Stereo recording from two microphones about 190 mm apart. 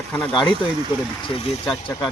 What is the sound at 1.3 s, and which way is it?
Speech, 30° left (ahead or behind).